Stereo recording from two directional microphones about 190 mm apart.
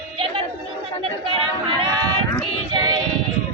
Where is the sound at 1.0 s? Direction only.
25° right (ahead or behind).